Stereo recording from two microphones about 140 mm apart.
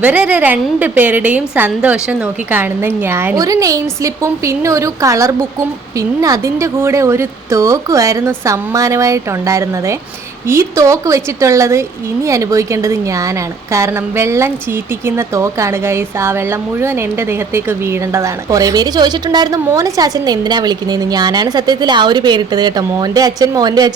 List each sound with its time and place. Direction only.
0.0 s a woman's voice: 10° right (ahead or behind); by 23.9 s 30° right (ahead or behind)